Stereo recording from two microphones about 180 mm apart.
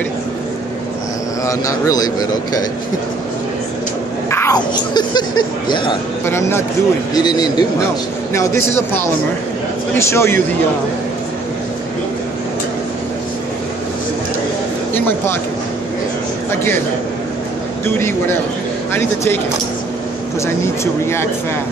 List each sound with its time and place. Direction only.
1.4 s speech: 20° left (ahead or behind)
4.3 s whispering: 15° left (ahead or behind)
4.6 s speech: 25° left (ahead or behind)
6.2 s speech: 15° left (ahead or behind)
9.9 s speech: 15° left (ahead or behind)
15.0 s speech: 10° left (ahead or behind)
17.8 s speech: 10° left (ahead or behind)
20.4 s speech: 15° left (ahead or behind)